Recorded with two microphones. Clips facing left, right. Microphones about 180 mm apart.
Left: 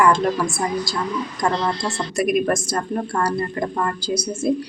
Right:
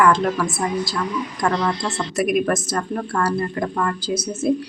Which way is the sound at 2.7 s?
15° left (ahead or behind).